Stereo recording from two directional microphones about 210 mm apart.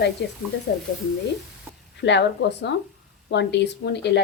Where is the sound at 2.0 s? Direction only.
55° left (ahead or behind).